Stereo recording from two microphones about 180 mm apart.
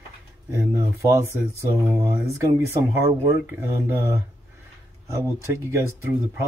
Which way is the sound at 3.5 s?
10° right (ahead or behind).